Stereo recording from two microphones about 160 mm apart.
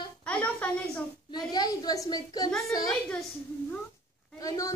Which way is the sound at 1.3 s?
25° left (ahead or behind).